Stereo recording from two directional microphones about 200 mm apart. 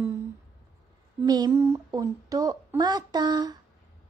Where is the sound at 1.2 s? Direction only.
20° right (ahead or behind).